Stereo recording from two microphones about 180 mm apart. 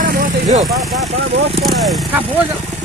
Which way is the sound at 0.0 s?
50° right (ahead or behind).